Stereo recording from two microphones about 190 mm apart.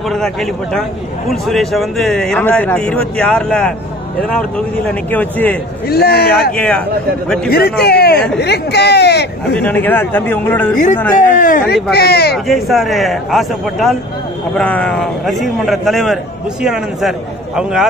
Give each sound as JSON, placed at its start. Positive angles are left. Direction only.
{"t": 0.1, "sound": "speech", "side_deg": 0}
{"t": 5.1, "sound": "speech", "side_deg": 10}
{"t": 5.9, "sound": "speech", "side_deg": 55}
{"t": 6.5, "sound": "speech", "side_deg": 5}
{"t": 7.4, "sound": "speech", "side_deg": 55}
{"t": 9.6, "sound": "speech", "side_deg": 10}
{"t": 11.1, "sound": "speech", "side_deg": 45}
{"t": 12.4, "sound": "speech", "side_deg": 0}